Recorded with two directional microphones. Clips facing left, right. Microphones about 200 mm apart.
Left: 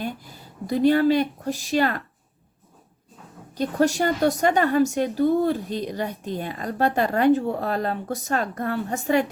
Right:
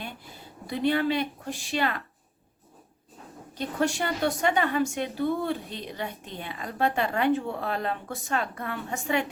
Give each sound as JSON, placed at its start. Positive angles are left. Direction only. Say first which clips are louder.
{"t": 0.7, "sound": "a woman's voice", "louder": "left 7 dB", "side_deg": 40}
{"t": 3.5, "sound": "a woman's voice", "louder": "left 6 dB", "side_deg": 40}